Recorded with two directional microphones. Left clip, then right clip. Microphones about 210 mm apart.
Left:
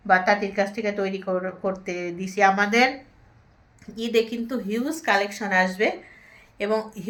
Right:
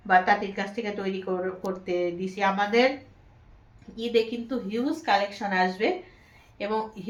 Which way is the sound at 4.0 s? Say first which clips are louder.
Left 2 dB; 55° left (ahead or behind).